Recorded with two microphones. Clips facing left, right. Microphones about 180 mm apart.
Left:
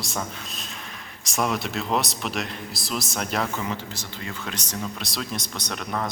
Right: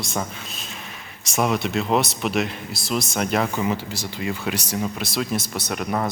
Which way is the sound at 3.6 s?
10° right (ahead or behind).